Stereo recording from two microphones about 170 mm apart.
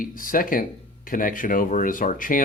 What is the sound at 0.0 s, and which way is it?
Speech, 55° left (ahead or behind).